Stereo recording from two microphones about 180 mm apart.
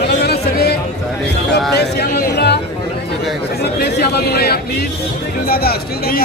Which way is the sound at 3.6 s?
65° left (ahead or behind).